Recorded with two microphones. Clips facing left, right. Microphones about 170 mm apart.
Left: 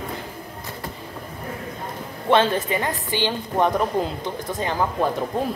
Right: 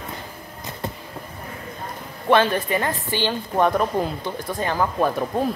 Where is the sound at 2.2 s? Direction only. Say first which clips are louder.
Even; 20° left (ahead or behind).